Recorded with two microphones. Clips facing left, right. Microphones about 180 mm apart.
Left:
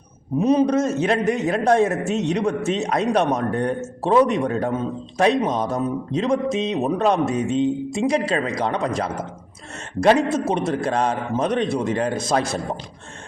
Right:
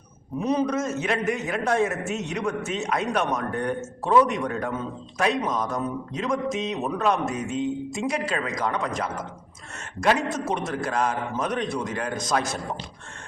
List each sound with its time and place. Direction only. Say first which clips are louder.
0.3 s a man's voice: left 7 dB; 20° left (ahead or behind)
10.3 s a man's voice: left 6 dB; 25° left (ahead or behind)